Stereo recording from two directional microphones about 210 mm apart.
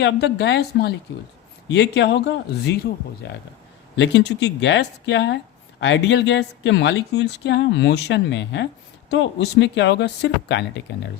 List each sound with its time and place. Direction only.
0.0 s speech: 55° left (ahead or behind)